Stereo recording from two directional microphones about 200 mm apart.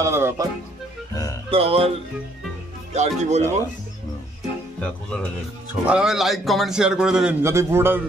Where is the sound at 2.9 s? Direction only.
35° right (ahead or behind).